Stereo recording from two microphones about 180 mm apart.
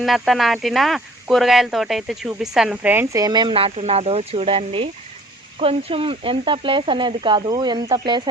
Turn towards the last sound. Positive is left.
turn(degrees=-25)  # may be behind; listen again after turning